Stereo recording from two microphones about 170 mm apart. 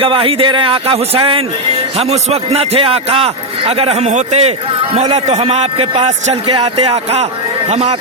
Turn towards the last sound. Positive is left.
turn(degrees=-35)  # may be behind; listen again after turning